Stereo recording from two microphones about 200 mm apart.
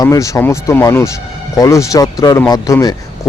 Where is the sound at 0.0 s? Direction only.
15° left (ahead or behind).